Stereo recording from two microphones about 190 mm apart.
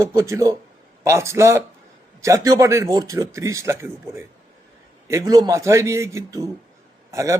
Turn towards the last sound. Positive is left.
turn(degrees=-15)  # may be behind; listen again after turning